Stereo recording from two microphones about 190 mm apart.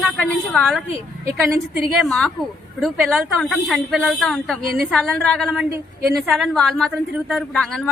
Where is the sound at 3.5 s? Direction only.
Centre (ahead or behind).